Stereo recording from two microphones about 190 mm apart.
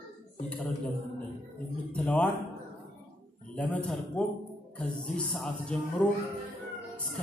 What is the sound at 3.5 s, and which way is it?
Speech, 5° left (ahead or behind).